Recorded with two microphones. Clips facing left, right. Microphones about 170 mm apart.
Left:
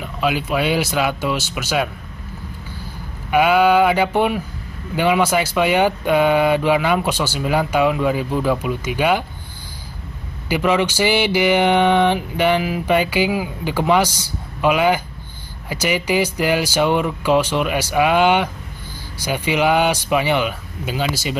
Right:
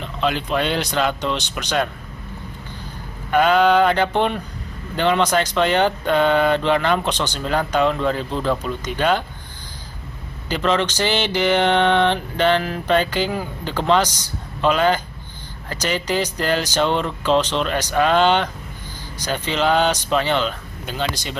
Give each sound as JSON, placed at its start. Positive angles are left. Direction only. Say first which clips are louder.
{"t": 0.0, "sound": "speech", "louder": "left 1 dB", "side_deg": 10}
{"t": 3.3, "sound": "speech", "louder": "left 1 dB", "side_deg": 10}
{"t": 10.5, "sound": "speech", "louder": "left 2 dB", "side_deg": 10}